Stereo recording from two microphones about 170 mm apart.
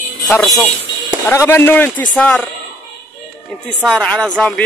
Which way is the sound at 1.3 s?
15° left (ahead or behind).